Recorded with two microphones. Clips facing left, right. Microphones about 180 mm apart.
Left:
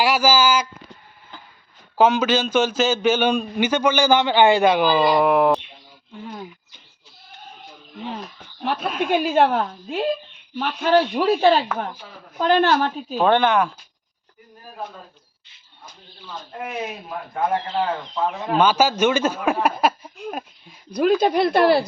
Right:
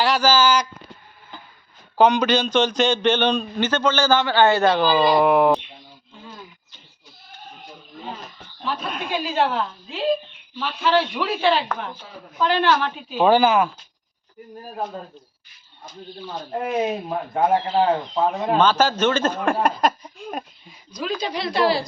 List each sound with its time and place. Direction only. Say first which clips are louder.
0.0 s speech: even; 10° left (ahead or behind)
2.0 s a man's voice: even; 5° left (ahead or behind)
5.0 s speech: right 2 dB; centre (ahead or behind)
8.6 s speech: left 4 dB; 65° left (ahead or behind)
8.9 s speech: left 6 dB; centre (ahead or behind)
9.1 s speech: left 4 dB; 50° left (ahead or behind)
13.1 s speech: right 1 dB; 5° right (ahead or behind)
16.4 s speech: right 7 dB; 35° right (ahead or behind)
18.5 s a man's voice: left 2 dB; 10° left (ahead or behind)
20.9 s speech: left 9 dB; 55° left (ahead or behind)